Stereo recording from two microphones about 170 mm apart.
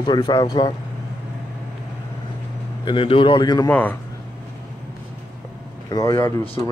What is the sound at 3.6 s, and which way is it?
Speech, 10° left (ahead or behind).